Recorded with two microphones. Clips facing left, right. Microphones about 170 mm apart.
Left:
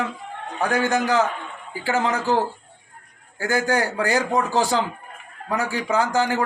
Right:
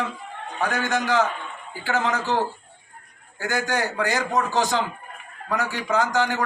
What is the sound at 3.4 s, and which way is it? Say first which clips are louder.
A man's voice: left 3 dB; 35° left (ahead or behind).